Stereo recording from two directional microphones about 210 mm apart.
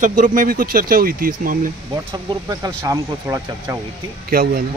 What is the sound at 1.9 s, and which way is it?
Speech, 20° right (ahead or behind).